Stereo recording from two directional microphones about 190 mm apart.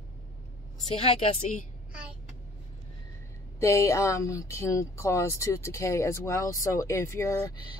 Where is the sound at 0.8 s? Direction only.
30° left (ahead or behind).